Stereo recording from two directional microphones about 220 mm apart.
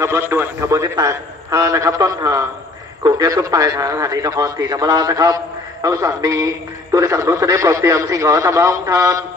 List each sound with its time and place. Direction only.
0.0 s a man's voice: 10° right (ahead or behind)